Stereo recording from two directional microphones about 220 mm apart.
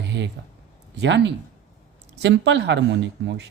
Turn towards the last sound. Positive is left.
turn(degrees=-55)  # may be behind; listen again after turning